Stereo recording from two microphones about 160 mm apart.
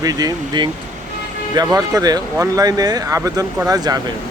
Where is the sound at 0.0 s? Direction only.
25° right (ahead or behind).